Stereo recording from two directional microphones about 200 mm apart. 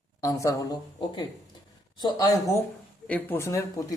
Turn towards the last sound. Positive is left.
turn(degrees=15)  # may be behind; listen again after turning